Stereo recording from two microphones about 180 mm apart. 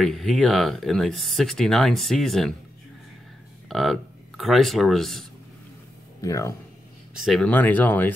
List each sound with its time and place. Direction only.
0.0 s speech: centre (ahead or behind)
3.6 s speech: centre (ahead or behind)
6.2 s speech: 15° left (ahead or behind)
7.2 s speech: centre (ahead or behind)